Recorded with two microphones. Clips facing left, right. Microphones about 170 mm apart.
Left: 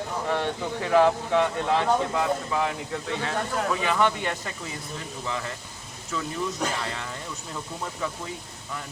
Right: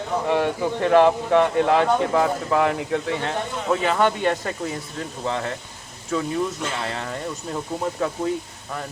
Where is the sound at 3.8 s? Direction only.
45° right (ahead or behind).